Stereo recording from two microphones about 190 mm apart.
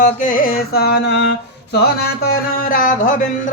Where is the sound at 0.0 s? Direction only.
45° left (ahead or behind); by 1.4 s 65° left (ahead or behind).